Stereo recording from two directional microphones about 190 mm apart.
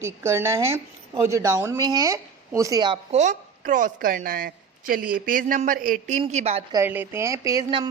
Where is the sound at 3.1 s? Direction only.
40° right (ahead or behind).